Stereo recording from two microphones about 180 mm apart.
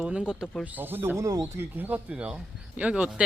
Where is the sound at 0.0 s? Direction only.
5° right (ahead or behind).